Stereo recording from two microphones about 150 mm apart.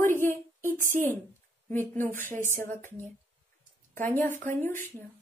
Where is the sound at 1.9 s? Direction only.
15° left (ahead or behind).